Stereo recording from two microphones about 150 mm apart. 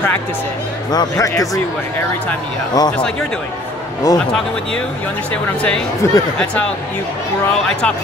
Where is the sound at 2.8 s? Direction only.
25° left (ahead or behind).